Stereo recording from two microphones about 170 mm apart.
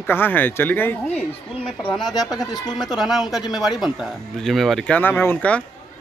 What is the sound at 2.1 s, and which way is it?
Speech, 20° left (ahead or behind).